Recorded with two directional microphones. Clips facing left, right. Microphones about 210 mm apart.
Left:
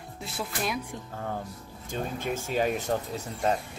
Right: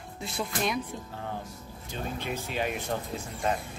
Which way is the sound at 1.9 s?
50° left (ahead or behind).